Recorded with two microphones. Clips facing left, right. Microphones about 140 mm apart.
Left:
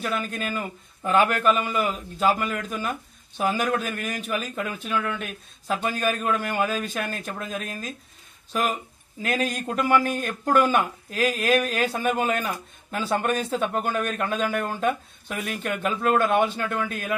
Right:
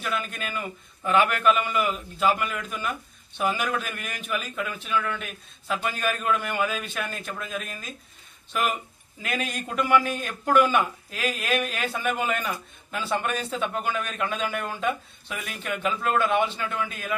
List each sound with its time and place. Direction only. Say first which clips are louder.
0.0 s a man's voice: left 3 dB; 40° left (ahead or behind)
9.2 s speech: left 4 dB; 40° left (ahead or behind)